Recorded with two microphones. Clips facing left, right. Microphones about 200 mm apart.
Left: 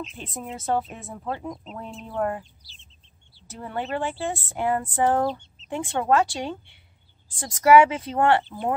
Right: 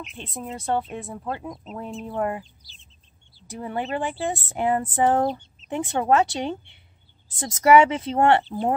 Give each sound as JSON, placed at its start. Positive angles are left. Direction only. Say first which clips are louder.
{"t": 0.2, "sound": "speech", "louder": "right 1 dB", "side_deg": 0}
{"t": 3.4, "sound": "speech", "louder": "right 2 dB", "side_deg": -15}
{"t": 5.3, "sound": "chicken", "louder": "right 1 dB", "side_deg": -10}
{"t": 5.8, "sound": "speech", "louder": "right 1 dB", "side_deg": -20}